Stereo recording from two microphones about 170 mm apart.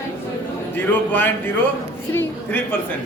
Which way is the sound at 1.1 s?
10° left (ahead or behind).